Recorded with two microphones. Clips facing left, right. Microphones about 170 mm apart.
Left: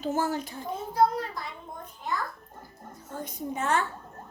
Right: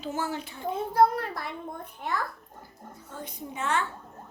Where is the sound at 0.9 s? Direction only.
60° right (ahead or behind).